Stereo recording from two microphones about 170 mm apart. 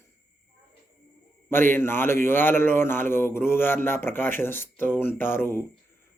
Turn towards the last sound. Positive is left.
turn(degrees=15)  # may be behind; listen again after turning